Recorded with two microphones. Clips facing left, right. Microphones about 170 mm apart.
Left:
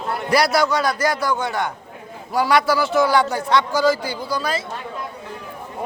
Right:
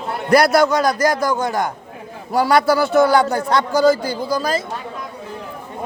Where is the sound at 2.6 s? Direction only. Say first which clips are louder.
Right 4 dB; 55° right (ahead or behind).